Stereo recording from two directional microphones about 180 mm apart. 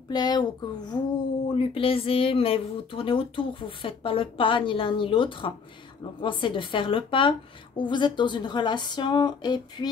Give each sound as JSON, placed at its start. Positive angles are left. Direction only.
{"t": 0.1, "sound": "speech", "side_deg": 20}